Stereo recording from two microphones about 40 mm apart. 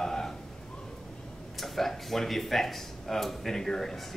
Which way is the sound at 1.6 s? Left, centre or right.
Centre.